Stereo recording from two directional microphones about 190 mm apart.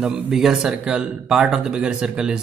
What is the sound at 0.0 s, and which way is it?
Speech, centre (ahead or behind).